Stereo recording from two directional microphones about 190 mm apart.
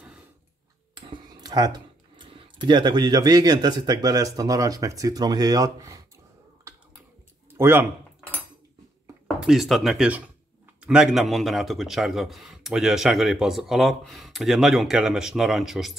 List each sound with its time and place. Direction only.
0.9 s speech: 20° right (ahead or behind)
7.5 s speech: 10° right (ahead or behind)
9.4 s a man's voice: centre (ahead or behind)